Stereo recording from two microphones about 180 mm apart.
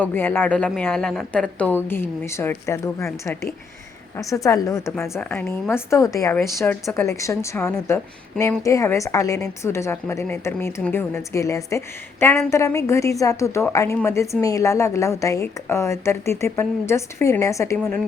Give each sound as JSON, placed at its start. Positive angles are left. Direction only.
{"t": 0.0, "sound": "a woman's voice", "side_deg": 10}